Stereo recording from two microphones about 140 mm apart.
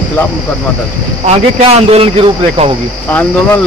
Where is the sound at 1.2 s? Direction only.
45° right (ahead or behind).